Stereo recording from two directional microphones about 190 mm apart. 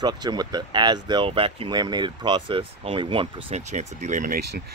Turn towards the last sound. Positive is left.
turn(degrees=-45)  # may be behind; listen again after turning